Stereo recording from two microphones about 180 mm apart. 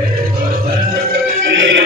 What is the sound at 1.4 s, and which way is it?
Music, 85° right.